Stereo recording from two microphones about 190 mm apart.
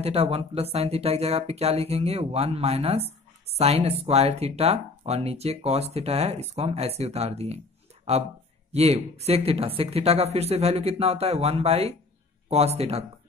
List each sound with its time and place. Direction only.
0.0 s speech: 30° right (ahead or behind)